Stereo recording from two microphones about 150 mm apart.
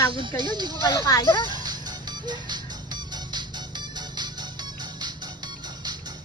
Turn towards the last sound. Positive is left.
turn(degrees=-30)  # may be behind; listen again after turning